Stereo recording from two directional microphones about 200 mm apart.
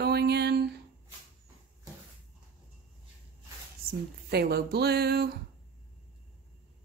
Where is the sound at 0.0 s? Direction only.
55° right (ahead or behind).